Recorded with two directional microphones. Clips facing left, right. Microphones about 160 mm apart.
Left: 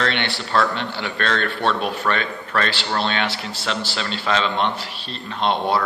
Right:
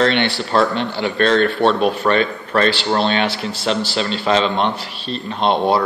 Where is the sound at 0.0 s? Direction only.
30° right (ahead or behind).